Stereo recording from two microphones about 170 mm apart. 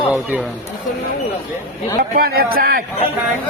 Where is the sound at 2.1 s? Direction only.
60° right (ahead or behind).